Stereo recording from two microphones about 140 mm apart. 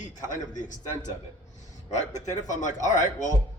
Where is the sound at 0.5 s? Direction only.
65° left (ahead or behind).